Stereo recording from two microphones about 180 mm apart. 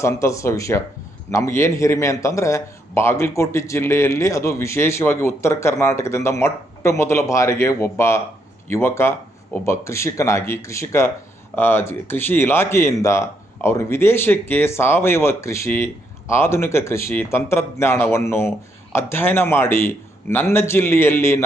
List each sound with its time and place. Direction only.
0.0 s a man's voice: 15° left (ahead or behind)